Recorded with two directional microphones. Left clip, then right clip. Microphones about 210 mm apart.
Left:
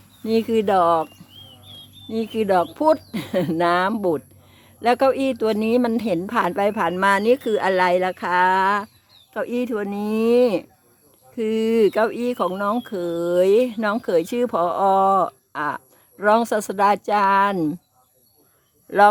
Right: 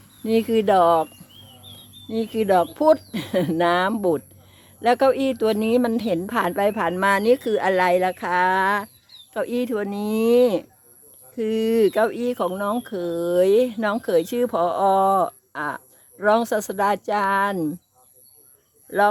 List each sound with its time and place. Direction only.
0.3 s speech: centre (ahead or behind)